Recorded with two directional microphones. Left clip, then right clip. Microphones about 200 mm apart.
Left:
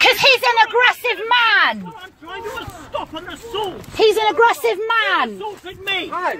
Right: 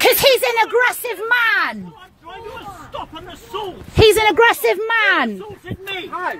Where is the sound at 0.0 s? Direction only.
55° right (ahead or behind).